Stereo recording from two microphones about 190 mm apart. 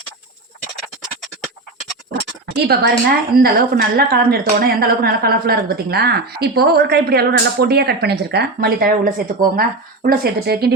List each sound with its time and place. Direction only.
2.6 s a woman's voice: 55° right (ahead or behind)